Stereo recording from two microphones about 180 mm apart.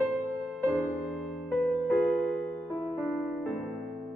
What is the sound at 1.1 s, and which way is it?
Music, centre (ahead or behind).